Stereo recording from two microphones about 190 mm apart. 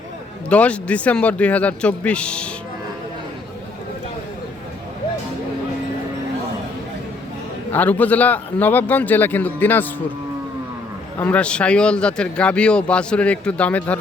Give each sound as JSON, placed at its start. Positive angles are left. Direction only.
{"t": 0.5, "sound": "a man's voice", "side_deg": 5}
{"t": 7.7, "sound": "a man's voice", "side_deg": 10}
{"t": 11.2, "sound": "speech", "side_deg": 10}